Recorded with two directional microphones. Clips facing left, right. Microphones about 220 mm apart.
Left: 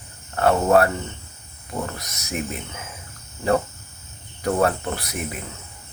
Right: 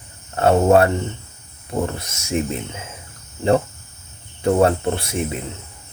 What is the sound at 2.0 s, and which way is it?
Speech, 30° right (ahead or behind).